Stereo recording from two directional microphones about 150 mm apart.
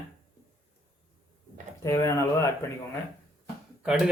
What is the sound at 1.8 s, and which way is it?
Speech, 20° left (ahead or behind).